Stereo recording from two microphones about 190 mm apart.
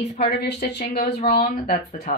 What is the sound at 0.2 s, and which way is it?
Speech, 60° left (ahead or behind).